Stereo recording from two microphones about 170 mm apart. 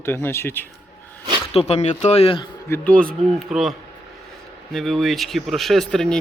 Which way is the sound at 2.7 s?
5° left (ahead or behind).